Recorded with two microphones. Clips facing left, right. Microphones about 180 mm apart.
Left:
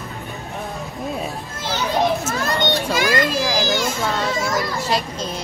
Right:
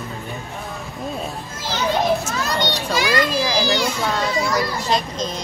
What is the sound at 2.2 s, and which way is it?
Speech, 50° left (ahead or behind).